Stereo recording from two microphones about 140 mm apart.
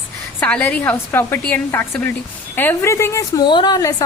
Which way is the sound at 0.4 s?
10° left (ahead or behind).